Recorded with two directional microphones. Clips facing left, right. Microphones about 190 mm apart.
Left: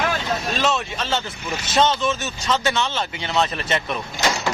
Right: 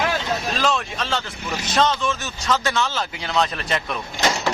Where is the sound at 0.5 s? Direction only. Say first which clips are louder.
Left 1 dB; centre (ahead or behind).